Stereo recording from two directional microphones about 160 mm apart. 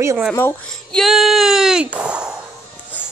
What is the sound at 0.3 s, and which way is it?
Speech, 15° left (ahead or behind).